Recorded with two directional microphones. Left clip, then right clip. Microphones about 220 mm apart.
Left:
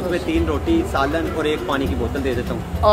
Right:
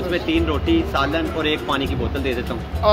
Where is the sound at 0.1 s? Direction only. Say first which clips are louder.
Right 2 dB; 10° right (ahead or behind).